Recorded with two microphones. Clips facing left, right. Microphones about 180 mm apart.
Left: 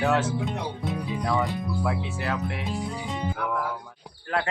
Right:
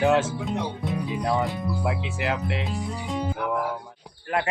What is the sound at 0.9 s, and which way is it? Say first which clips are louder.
Speech: right 1 dB; centre (ahead or behind).